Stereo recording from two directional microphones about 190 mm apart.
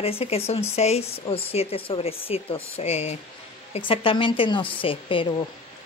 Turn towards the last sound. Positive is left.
turn(degrees=25)  # may be behind; listen again after turning